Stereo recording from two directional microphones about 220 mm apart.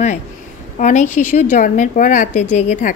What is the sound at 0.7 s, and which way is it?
A woman's voice, 35° left (ahead or behind).